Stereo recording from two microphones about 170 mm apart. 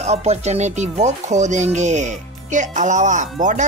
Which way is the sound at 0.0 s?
40° right (ahead or behind).